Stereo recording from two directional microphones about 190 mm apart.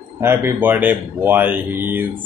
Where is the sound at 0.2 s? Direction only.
15° right (ahead or behind).